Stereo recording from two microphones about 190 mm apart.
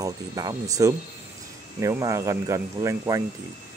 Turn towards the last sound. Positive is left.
turn(degrees=-15)  # may be behind; listen again after turning